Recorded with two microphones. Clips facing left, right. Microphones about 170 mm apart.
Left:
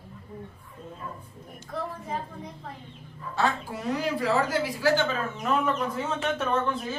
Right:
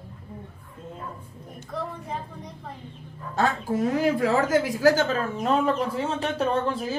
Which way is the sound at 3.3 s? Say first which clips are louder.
Right 4 dB; 45° right (ahead or behind).